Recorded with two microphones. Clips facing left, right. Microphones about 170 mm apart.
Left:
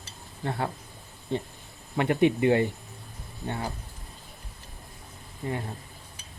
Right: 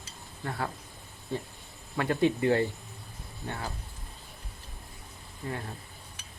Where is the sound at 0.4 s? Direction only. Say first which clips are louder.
Left 4 dB; 30° left (ahead or behind).